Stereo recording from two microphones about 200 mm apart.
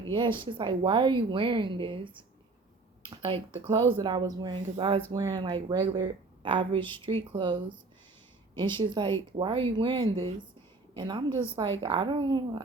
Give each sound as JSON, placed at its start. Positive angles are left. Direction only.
{"t": 0.1, "sound": "a woman's voice", "side_deg": -25}